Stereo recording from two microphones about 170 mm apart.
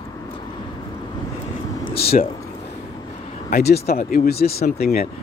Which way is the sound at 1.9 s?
65° left (ahead or behind).